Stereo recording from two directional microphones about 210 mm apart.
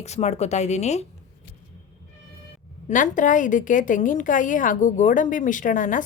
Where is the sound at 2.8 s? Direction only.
35° left (ahead or behind).